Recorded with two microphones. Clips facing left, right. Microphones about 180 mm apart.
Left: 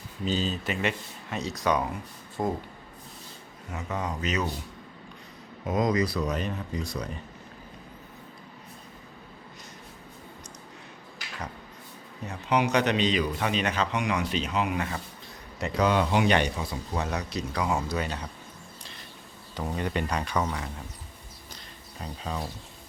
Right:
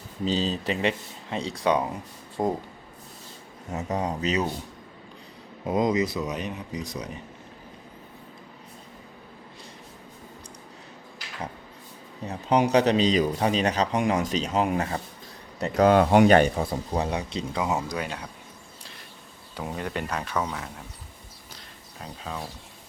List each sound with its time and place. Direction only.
0.3 s speech: 35° right (ahead or behind)
3.7 s speech: 40° right (ahead or behind)
5.6 s speech: 30° right (ahead or behind)
6.3 s speech: 15° right (ahead or behind)
12.2 s speech: 35° right (ahead or behind)
16.9 s speech: 30° right (ahead or behind); by 18.1 s 10° right (ahead or behind)
19.5 s speech: 5° right (ahead or behind)
22.0 s speech: centre (ahead or behind)